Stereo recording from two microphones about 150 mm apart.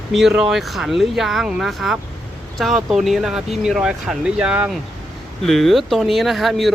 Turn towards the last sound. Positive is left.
turn(degrees=0)  # may be behind; listen again after turning